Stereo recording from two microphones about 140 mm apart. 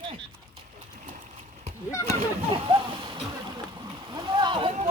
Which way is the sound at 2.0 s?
40° right (ahead or behind).